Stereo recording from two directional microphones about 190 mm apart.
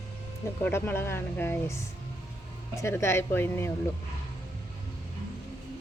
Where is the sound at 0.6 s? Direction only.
10° left (ahead or behind).